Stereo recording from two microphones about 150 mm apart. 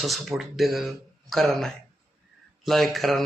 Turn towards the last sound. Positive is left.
turn(degrees=0)  # may be behind; listen again after turning